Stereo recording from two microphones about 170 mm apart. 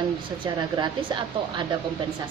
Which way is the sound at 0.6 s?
25° right (ahead or behind).